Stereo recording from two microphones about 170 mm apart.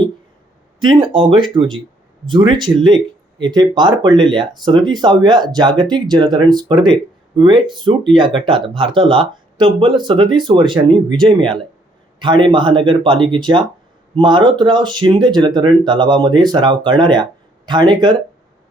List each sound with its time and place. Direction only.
0.8 s speech: 30° right (ahead or behind)